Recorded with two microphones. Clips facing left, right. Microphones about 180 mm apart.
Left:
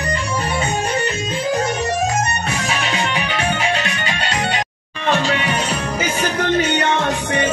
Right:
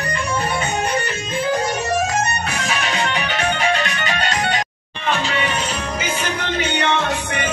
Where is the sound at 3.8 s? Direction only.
30° left (ahead or behind).